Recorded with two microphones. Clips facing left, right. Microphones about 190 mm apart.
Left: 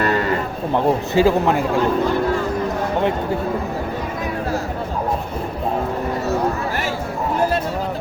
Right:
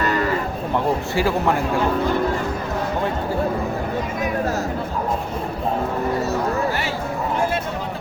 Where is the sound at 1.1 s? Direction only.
20° left (ahead or behind).